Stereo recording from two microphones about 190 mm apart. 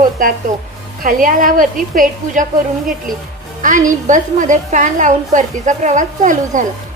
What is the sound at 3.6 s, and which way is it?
A woman's voice, 40° right (ahead or behind).